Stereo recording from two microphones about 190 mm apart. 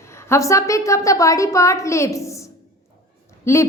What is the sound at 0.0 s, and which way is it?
A woman's voice, 15° left (ahead or behind).